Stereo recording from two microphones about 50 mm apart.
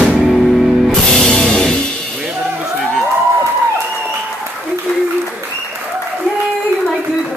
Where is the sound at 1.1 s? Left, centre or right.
Centre.